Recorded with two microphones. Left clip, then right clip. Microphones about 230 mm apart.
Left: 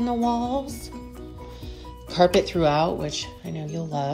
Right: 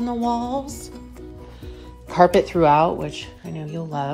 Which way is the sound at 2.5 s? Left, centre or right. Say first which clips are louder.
Right 5 dB; right.